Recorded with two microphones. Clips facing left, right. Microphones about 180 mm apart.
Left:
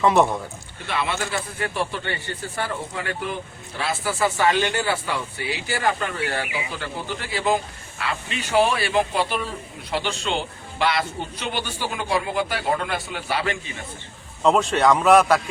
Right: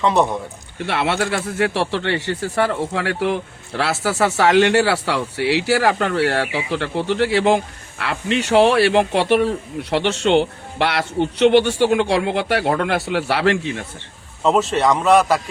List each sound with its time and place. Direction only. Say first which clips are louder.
0.0 s speech: right 1 dB; centre (ahead or behind)
0.9 s speech: right 6 dB; 70° right (ahead or behind)
14.4 s speech: right 1 dB; centre (ahead or behind)